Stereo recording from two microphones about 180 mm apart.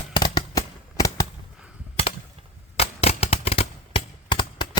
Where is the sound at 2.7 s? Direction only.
35° left (ahead or behind).